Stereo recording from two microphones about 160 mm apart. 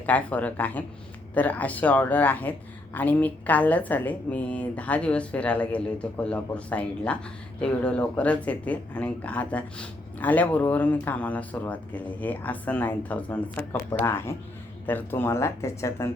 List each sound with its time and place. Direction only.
0.0 s speech: 10° left (ahead or behind)